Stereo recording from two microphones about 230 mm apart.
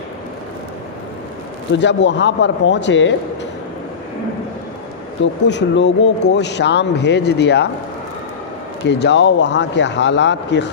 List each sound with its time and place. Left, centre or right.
1.7 s speech: left
5.2 s speech: left
8.9 s speech: left